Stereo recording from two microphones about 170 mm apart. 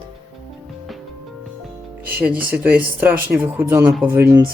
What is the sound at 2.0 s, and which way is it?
Speech, 10° right (ahead or behind).